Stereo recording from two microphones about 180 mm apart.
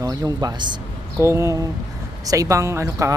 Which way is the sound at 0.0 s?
20° right (ahead or behind).